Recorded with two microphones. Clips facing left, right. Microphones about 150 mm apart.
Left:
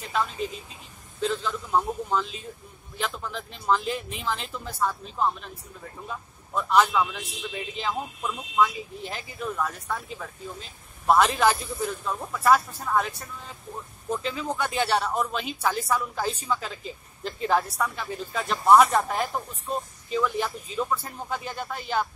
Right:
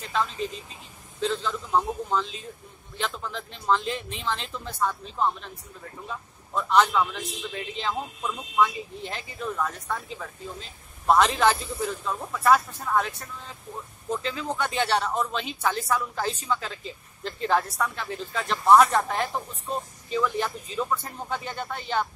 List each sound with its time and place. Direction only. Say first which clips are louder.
0.0 s a man's voice: even; 5° left (ahead or behind)